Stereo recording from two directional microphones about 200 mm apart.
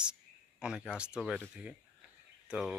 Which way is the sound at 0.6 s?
5° right (ahead or behind).